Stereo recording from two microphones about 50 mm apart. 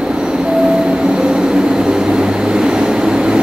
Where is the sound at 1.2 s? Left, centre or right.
Centre.